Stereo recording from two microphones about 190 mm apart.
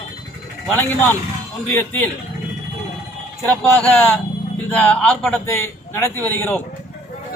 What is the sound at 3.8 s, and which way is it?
A man's voice, 5° left (ahead or behind).